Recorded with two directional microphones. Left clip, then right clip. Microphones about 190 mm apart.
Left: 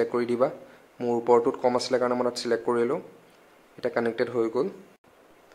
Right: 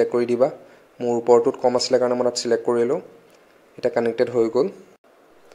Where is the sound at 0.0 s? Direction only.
10° right (ahead or behind).